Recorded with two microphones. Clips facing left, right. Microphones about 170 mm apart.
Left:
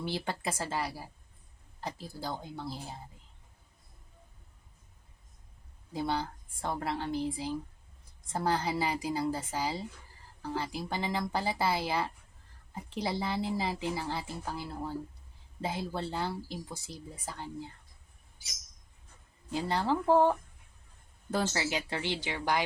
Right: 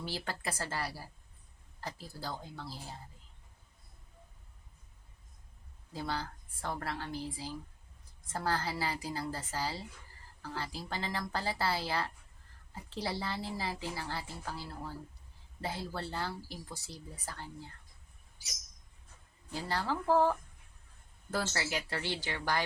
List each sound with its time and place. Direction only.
0.0 s a woman's voice: 20° left (ahead or behind)
5.9 s a woman's voice: 20° left (ahead or behind)
19.5 s a woman's voice: 20° left (ahead or behind)